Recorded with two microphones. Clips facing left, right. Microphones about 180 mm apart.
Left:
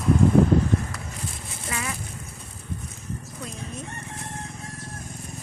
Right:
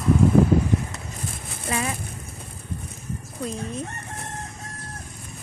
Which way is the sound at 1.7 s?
30° right (ahead or behind).